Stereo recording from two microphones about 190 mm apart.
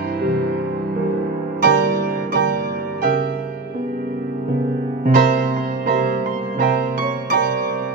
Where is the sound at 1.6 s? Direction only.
50° right (ahead or behind).